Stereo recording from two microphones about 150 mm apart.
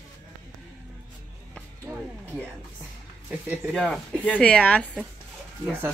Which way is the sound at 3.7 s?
5° left (ahead or behind).